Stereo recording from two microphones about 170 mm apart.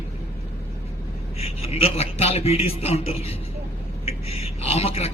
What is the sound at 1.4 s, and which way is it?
A man's voice, 35° left (ahead or behind).